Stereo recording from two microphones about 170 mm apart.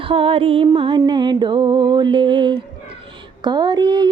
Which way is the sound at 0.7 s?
25° right (ahead or behind).